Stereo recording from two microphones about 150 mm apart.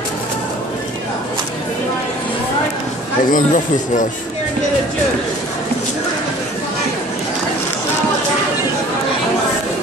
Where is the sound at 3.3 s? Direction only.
60° left (ahead or behind).